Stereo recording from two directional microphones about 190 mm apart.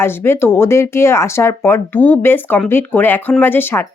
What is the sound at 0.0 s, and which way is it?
A woman's voice, 10° left (ahead or behind).